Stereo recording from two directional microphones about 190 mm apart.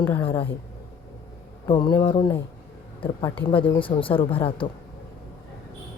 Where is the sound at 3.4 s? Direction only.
75° left (ahead or behind).